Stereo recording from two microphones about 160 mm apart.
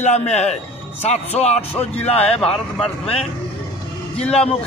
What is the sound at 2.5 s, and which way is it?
Speech, 5° left (ahead or behind).